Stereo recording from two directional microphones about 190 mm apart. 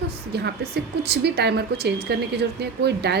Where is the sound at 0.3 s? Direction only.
55° right (ahead or behind).